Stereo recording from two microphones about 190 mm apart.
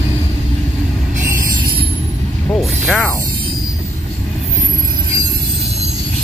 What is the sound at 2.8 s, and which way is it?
Mechanisms, centre (ahead or behind).